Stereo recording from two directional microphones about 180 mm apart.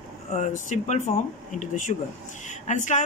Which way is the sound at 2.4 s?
40° left (ahead or behind).